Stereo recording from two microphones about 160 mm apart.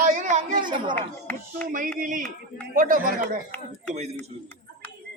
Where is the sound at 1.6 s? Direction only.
55° right (ahead or behind).